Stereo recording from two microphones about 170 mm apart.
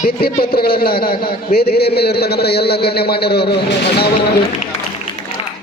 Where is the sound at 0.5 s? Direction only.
65° left (ahead or behind).